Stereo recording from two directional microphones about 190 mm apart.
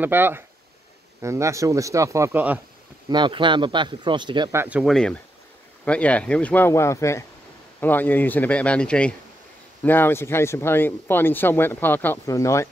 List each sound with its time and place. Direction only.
0.0 s speech: 10° right (ahead or behind)
3.1 s speech: 25° right (ahead or behind)
4.6 s speech: 5° right (ahead or behind); by 12.6 s 15° left (ahead or behind)